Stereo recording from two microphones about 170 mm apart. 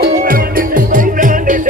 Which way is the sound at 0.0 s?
60° right (ahead or behind).